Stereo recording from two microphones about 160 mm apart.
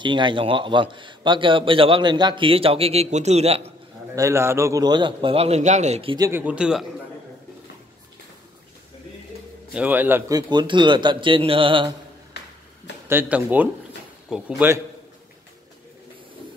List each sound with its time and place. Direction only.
0.0 s a man's voice: 30° right (ahead or behind)
4.1 s a man's voice: 20° right (ahead or behind); by 6.1 s 40° right (ahead or behind)
6.1 s a man's voice: 20° right (ahead or behind)
6.4 s a man's voice: 5° right (ahead or behind)
9.7 s a man's voice: 10° right (ahead or behind); by 11.9 s 30° right (ahead or behind)
13.1 s speech: 10° right (ahead or behind)